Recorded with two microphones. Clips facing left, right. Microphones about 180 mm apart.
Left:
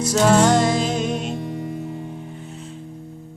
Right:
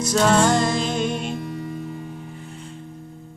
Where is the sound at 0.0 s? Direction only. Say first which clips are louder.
Left 2 dB; 10° left (ahead or behind).